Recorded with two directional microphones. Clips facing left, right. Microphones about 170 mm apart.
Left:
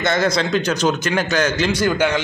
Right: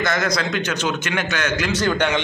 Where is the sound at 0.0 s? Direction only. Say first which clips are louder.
Left 3 dB; 30° left (ahead or behind).